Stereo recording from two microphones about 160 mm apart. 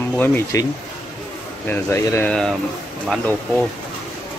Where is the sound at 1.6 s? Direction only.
15° left (ahead or behind).